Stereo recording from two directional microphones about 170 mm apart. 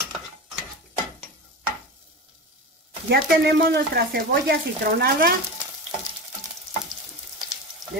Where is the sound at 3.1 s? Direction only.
65° right (ahead or behind).